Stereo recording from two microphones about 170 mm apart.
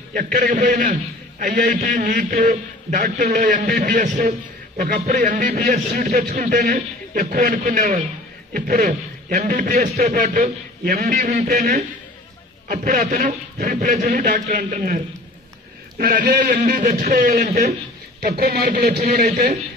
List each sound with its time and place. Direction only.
0.1 s a man's voice: 50° right (ahead or behind)
3.3 s a man's voice: 45° right (ahead or behind)
4.7 s a man's voice: 60° right (ahead or behind)
13.0 s a man's voice: 45° right (ahead or behind)
16.0 s a man's voice: 60° right (ahead or behind)
18.2 s a man's voice: 70° right (ahead or behind)